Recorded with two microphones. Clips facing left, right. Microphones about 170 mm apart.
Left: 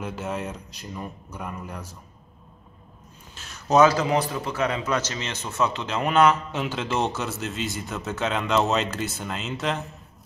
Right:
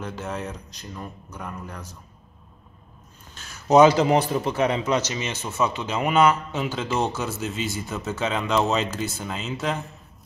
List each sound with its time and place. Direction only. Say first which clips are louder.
0.0 s a man's voice: left 1 dB; 5° left (ahead or behind)
3.6 s a man's voice: right 3 dB; 20° right (ahead or behind)
4.0 s a man's voice: right 4 dB; 30° right (ahead or behind); by 9.8 s centre (ahead or behind)